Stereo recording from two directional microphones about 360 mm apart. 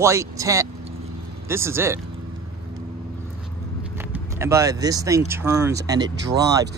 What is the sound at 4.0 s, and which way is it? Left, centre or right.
Speech, centre.